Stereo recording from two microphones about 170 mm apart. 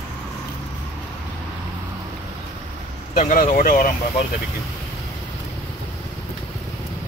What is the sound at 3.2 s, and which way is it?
Speech, 50° left (ahead or behind).